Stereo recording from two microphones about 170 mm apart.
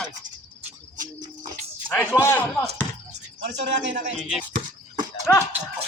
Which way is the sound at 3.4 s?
90° right.